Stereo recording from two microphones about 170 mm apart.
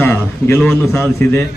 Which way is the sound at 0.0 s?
15° left (ahead or behind).